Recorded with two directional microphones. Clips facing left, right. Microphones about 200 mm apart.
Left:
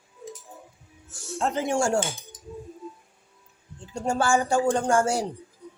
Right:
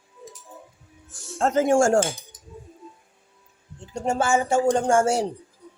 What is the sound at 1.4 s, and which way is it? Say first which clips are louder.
Speech: right 6 dB; 45° right (ahead or behind).